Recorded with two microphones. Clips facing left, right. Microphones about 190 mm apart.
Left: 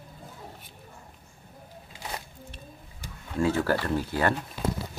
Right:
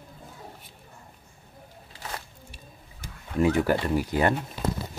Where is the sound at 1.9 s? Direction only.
15° left (ahead or behind).